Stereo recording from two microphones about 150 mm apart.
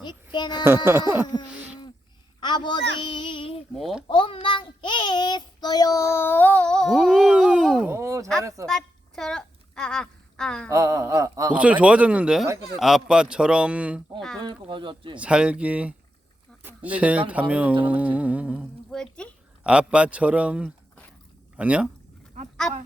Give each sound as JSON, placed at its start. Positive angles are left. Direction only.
{"t": 0.0, "sound": "a child's voice", "side_deg": 30}
{"t": 1.1, "sound": "a man's voice", "side_deg": -15}
{"t": 2.4, "sound": "a woman's voice", "side_deg": 30}
{"t": 3.8, "sound": "speech", "side_deg": 0}
{"t": 4.1, "sound": "child singing", "side_deg": 35}
{"t": 7.9, "sound": "a sound", "side_deg": -15}
{"t": 8.6, "sound": "a sound", "side_deg": 5}
{"t": 10.7, "sound": "speech", "side_deg": -20}
{"t": 11.5, "sound": "a man's voice", "side_deg": -10}
{"t": 14.4, "sound": "speech", "side_deg": -35}
{"t": 15.2, "sound": "a man's voice", "side_deg": -10}
{"t": 18.9, "sound": "speech", "side_deg": 5}
{"t": 19.6, "sound": "a man's voice", "side_deg": -5}